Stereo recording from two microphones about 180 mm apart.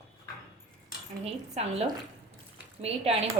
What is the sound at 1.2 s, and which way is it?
Speech, 35° right (ahead or behind).